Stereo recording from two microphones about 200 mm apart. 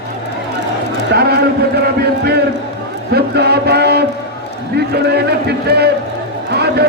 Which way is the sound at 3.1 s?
55° right (ahead or behind).